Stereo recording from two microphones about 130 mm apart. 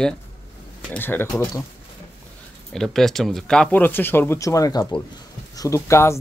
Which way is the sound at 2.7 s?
5° left (ahead or behind).